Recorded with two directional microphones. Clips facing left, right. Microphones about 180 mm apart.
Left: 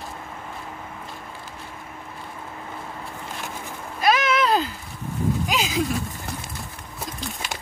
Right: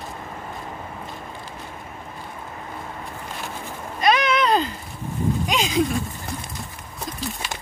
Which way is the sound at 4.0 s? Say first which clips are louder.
Right 1 dB; 5° left (ahead or behind).